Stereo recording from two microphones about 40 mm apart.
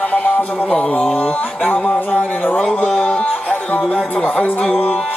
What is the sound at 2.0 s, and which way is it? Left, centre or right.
Music, left.